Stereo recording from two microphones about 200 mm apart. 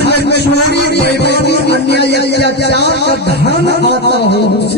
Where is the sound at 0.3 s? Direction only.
55° left (ahead or behind).